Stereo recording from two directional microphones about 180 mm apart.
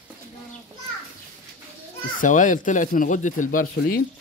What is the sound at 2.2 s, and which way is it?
Speech, 45° left (ahead or behind).